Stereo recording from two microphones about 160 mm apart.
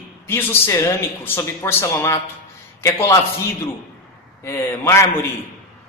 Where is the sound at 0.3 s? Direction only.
15° left (ahead or behind).